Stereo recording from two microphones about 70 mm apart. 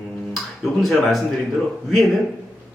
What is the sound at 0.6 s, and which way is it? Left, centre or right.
Speech, centre.